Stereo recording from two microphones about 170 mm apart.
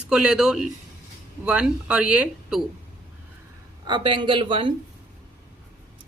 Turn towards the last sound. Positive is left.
turn(degrees=-30)  # may be behind; listen again after turning